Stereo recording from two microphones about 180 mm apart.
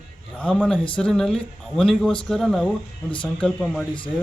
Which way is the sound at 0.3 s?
5° left (ahead or behind).